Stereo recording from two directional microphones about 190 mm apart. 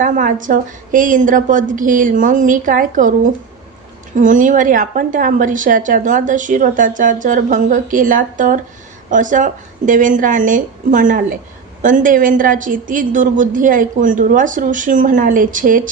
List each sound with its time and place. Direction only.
0.0 s a woman's voice: 45° right (ahead or behind)
4.2 s a woman's voice: 40° right (ahead or behind)